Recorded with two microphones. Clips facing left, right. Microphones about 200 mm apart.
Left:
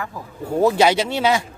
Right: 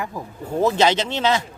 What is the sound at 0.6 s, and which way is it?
Speech, 10° left (ahead or behind).